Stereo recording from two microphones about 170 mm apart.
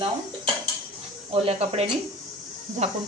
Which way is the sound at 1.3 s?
35° right (ahead or behind).